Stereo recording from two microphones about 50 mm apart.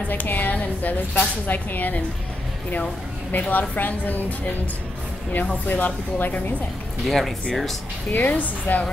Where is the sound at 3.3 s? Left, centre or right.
Left.